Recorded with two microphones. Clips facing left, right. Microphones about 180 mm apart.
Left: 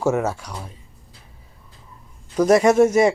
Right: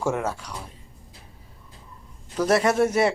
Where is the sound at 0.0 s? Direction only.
10° left (ahead or behind).